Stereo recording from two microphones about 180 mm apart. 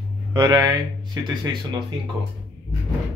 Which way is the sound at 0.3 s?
25° right (ahead or behind).